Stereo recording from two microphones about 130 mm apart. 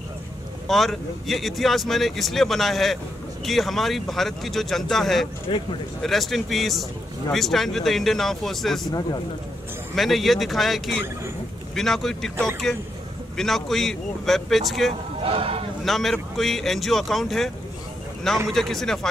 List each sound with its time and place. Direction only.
0.7 s speech: centre (ahead or behind)
9.9 s speech: centre (ahead or behind)
15.2 s speech: 45° right (ahead or behind)
15.8 s speech: centre (ahead or behind)
18.5 s speech: centre (ahead or behind)